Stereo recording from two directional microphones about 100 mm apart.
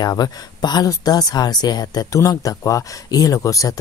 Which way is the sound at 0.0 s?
40° left (ahead or behind).